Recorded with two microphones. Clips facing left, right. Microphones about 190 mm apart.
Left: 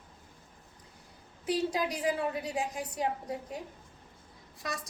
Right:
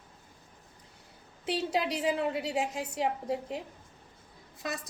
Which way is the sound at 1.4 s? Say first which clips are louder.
Even; 25° right (ahead or behind).